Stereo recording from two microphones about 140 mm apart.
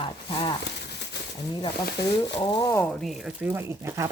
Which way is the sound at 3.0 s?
5° right (ahead or behind).